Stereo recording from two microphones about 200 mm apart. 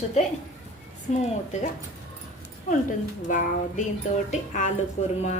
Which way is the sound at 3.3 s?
40° left (ahead or behind).